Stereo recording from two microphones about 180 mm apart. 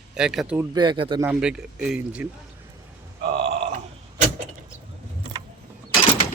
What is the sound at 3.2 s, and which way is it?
Burping, 35° right (ahead or behind).